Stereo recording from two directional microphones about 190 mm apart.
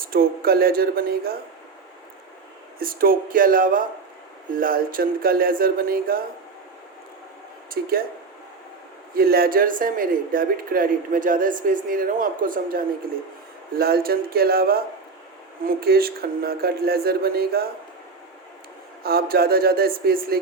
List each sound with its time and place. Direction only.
0.0 s speech: 50° right (ahead or behind)
2.7 s speech: 50° right (ahead or behind)
7.7 s speech: 50° right (ahead or behind)
9.1 s speech: 50° right (ahead or behind)
19.0 s speech: 55° right (ahead or behind)